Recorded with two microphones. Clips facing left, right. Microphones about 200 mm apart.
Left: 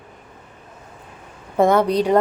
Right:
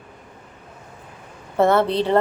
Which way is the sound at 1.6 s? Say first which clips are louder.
Left 1 dB; 15° left (ahead or behind).